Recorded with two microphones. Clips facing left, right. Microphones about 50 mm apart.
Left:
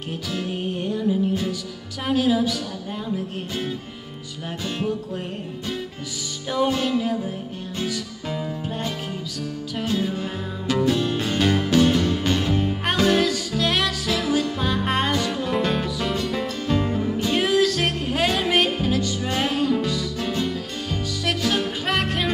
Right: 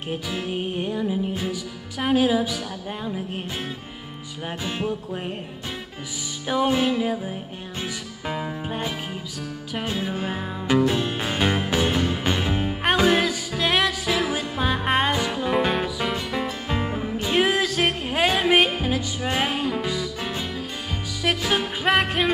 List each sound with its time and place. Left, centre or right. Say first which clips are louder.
0.1 s music: even; centre
4.5 s music: left 1 dB; centre
6.5 s music: right 1 dB; centre